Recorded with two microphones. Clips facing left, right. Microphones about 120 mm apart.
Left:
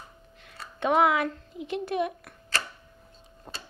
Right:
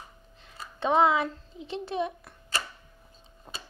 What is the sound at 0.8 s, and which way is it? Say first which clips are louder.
A child's voice: even; 25° right (ahead or behind).